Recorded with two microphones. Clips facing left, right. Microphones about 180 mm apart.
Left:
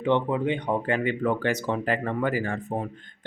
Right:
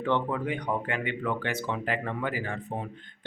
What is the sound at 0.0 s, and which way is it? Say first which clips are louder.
Speech: left 4 dB; 20° left (ahead or behind).